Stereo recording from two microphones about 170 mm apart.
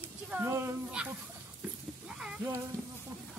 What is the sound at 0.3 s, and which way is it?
Speech, 15° right (ahead or behind).